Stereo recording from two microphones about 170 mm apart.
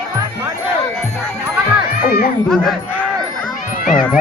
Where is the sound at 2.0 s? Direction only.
60° left (ahead or behind).